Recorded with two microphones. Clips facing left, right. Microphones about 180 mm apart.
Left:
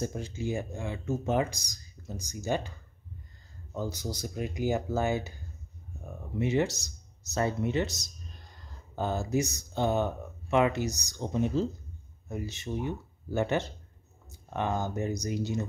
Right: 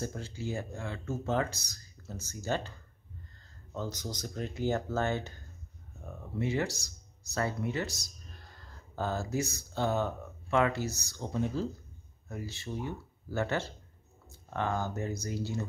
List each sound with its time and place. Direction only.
0.0 s speech: 15° left (ahead or behind)
3.7 s speech: 10° left (ahead or behind)